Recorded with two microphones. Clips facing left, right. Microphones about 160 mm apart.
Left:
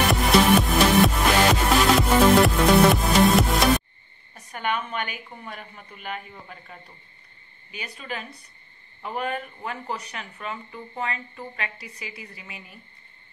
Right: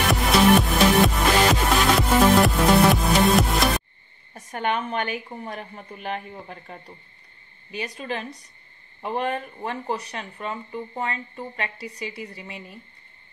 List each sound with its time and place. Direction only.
0.1 s music: centre (ahead or behind)
4.3 s a woman's voice: 40° right (ahead or behind)
7.8 s a woman's voice: 35° right (ahead or behind)